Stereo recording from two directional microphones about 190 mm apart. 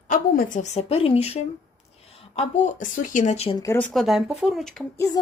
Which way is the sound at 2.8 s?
45° left (ahead or behind).